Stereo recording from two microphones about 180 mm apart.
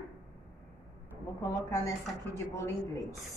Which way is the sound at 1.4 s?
20° left (ahead or behind).